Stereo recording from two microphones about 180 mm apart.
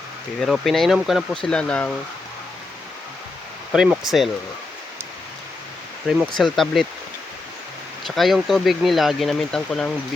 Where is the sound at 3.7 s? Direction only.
5° right (ahead or behind).